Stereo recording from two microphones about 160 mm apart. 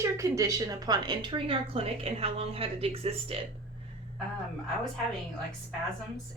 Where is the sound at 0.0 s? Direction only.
20° right (ahead or behind); by 3.4 s 35° right (ahead or behind).